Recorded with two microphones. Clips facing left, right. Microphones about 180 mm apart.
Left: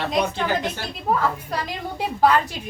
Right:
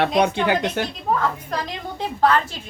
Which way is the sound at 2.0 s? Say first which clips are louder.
Even; 10° left (ahead or behind).